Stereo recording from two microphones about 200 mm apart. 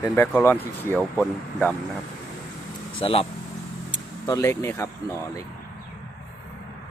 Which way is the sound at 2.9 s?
30° left (ahead or behind).